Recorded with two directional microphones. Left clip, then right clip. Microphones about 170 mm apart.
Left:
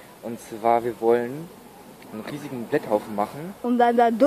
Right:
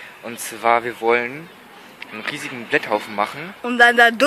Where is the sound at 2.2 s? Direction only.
10° right (ahead or behind).